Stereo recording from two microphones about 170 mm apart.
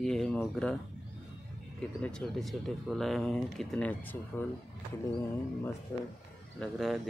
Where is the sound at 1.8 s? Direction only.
5° left (ahead or behind).